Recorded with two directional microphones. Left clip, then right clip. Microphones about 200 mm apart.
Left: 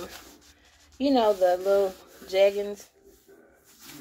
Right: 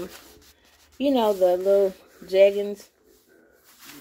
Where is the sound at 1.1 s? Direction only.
30° right (ahead or behind).